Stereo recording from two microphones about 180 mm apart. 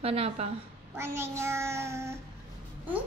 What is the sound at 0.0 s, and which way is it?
Speech, 35° right (ahead or behind).